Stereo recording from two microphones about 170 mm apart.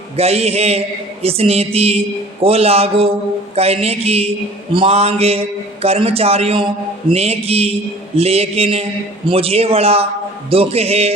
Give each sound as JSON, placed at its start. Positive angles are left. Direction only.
{"t": 0.2, "sound": "a man's voice", "side_deg": -35}